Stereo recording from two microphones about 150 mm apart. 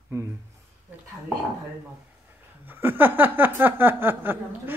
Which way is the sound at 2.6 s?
15° right (ahead or behind).